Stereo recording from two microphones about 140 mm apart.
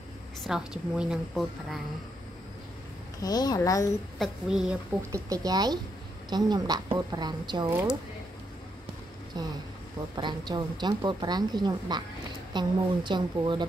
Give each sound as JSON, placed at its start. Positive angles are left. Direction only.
{"t": 0.4, "sound": "a woman's voice", "side_deg": -5}
{"t": 3.2, "sound": "a child's voice", "side_deg": 30}
{"t": 4.2, "sound": "a woman's voice", "side_deg": -5}
{"t": 5.1, "sound": "a woman's voice", "side_deg": -25}
{"t": 7.7, "sound": "speech", "side_deg": -5}
{"t": 9.3, "sound": "a woman's voice", "side_deg": -30}